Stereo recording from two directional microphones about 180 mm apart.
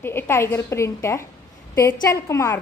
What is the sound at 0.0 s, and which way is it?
A woman's voice, 15° left (ahead or behind).